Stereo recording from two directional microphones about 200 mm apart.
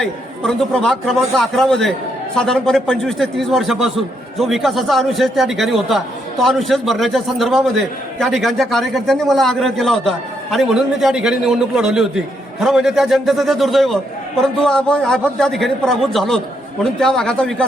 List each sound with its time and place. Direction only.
0.0 s a man's voice: centre (ahead or behind)